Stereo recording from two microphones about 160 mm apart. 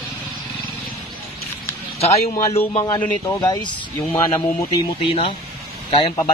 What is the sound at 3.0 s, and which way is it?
Speech, 15° left (ahead or behind).